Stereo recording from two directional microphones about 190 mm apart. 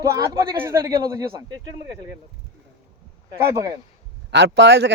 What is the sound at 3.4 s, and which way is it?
Speech, 15° right (ahead or behind).